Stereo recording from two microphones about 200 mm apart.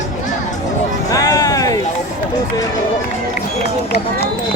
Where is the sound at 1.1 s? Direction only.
15° left (ahead or behind).